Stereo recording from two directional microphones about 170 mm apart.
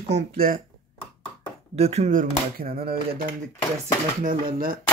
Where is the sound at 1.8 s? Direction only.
40° right (ahead or behind); by 3.0 s 60° right (ahead or behind).